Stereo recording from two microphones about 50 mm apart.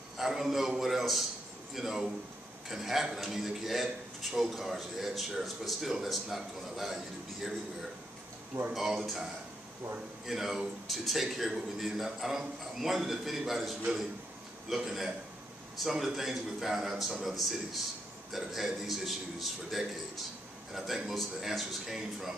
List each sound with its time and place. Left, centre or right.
0.2 s a man's voice: centre
8.7 s a man's voice: centre
10.2 s a man's voice: centre
14.8 s a man's voice: centre